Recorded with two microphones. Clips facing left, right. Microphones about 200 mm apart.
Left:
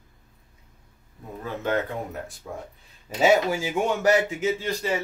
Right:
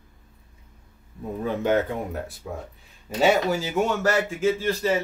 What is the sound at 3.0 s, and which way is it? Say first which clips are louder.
A man's voice: even; 10° left (ahead or behind).